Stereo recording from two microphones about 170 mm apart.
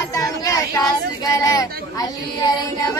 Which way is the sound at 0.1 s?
20° left (ahead or behind).